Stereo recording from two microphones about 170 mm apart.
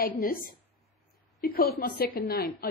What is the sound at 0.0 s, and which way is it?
A woman's voice, 60° left (ahead or behind).